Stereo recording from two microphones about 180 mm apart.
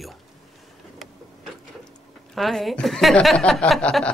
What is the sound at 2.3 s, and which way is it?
Speech, centre (ahead or behind).